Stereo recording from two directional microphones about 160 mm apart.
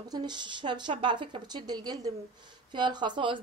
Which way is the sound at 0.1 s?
25° right (ahead or behind).